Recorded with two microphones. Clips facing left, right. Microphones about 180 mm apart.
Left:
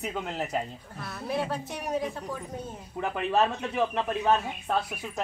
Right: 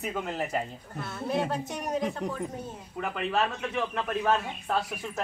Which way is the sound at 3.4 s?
25° left (ahead or behind).